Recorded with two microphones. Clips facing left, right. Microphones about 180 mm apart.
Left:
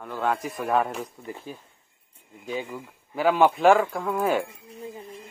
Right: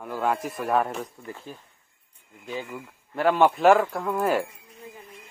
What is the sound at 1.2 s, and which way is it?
Speech, 15° left (ahead or behind).